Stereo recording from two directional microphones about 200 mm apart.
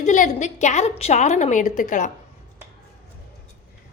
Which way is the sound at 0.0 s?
35° left (ahead or behind).